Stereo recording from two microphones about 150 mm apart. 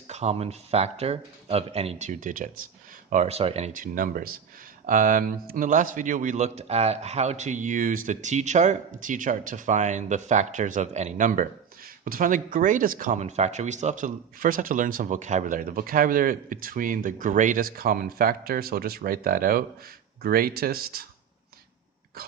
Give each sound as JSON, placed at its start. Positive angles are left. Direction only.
{"t": 0.1, "sound": "speech", "side_deg": -45}
{"t": 3.7, "sound": "speech", "side_deg": -65}
{"t": 4.9, "sound": "speech", "side_deg": -65}